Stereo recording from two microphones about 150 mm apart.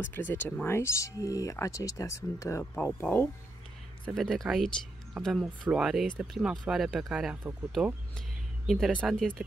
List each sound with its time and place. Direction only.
0.1 s speech: 10° left (ahead or behind)